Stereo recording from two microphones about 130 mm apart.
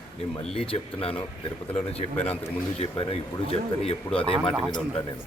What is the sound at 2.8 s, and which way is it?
Speech, 45° left (ahead or behind).